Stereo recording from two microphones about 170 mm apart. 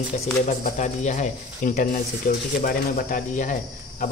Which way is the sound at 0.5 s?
45° left (ahead or behind).